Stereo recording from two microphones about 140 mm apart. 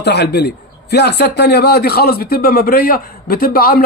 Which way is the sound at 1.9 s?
90° left.